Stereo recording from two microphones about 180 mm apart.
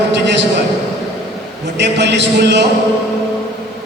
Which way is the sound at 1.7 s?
75° right (ahead or behind).